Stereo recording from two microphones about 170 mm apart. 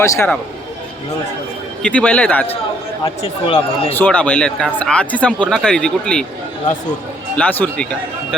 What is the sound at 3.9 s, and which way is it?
Speech, 10° left (ahead or behind).